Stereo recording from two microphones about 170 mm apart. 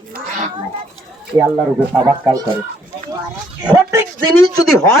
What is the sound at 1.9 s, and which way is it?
Speech, 20° right (ahead or behind).